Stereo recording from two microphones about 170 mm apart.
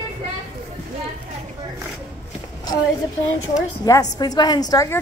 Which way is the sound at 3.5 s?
20° left (ahead or behind).